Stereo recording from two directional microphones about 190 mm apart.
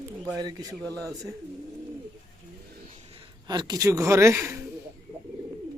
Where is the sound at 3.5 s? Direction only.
20° right (ahead or behind).